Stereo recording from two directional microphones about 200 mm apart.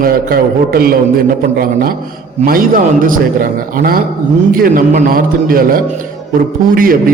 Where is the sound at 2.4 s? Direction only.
45° right (ahead or behind).